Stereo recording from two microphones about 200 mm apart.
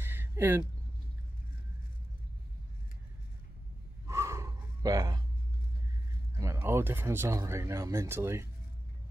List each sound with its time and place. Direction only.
0.0 s a sound: 10° right (ahead or behind)
4.1 s gasp: 15° right (ahead or behind)
6.4 s speech: 15° right (ahead or behind)